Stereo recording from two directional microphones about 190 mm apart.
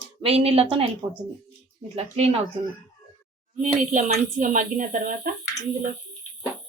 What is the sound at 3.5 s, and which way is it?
Speech, 35° right (ahead or behind).